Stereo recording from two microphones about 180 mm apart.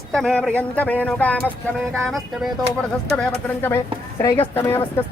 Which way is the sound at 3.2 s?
10° left (ahead or behind).